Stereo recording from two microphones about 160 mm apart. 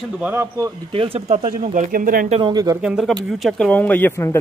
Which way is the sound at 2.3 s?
30° right (ahead or behind).